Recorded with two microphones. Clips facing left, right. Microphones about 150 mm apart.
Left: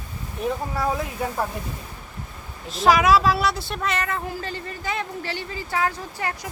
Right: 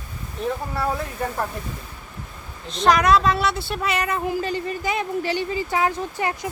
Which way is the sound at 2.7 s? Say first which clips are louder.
Even; 5° left (ahead or behind).